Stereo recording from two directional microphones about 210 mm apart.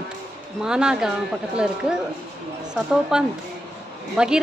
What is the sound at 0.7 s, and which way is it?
A woman's voice, 5° right (ahead or behind).